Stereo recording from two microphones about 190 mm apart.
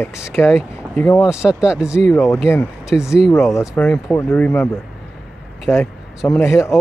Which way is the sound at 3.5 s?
15° left (ahead or behind).